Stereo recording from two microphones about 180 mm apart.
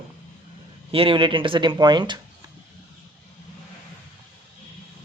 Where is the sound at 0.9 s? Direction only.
30° right (ahead or behind).